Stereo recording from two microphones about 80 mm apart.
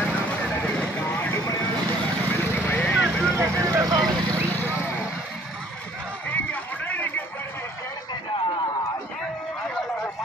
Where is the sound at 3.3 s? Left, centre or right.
Right.